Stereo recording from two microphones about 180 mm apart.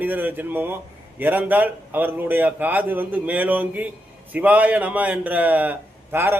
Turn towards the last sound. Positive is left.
turn(degrees=-10)  # may be behind; listen again after turning